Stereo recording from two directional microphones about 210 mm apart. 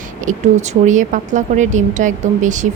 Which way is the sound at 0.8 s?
35° right (ahead or behind).